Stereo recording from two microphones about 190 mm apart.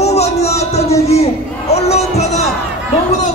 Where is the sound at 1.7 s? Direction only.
35° left (ahead or behind).